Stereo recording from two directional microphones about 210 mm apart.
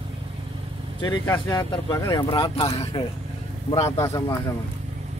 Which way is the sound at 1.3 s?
20° left (ahead or behind).